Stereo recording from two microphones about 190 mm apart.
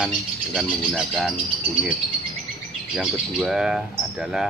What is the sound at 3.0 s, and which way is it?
Speech, 5° right (ahead or behind).